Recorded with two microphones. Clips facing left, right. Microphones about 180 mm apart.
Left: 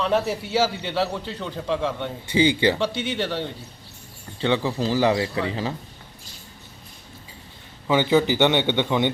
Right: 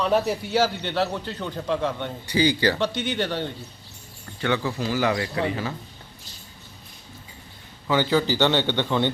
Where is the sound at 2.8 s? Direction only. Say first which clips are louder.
Even; 5° left (ahead or behind).